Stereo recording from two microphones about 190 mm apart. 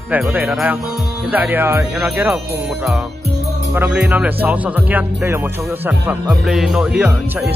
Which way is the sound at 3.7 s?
5° right (ahead or behind).